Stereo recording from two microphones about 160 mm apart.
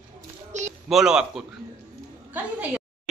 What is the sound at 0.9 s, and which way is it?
A woman's voice, 5° right (ahead or behind).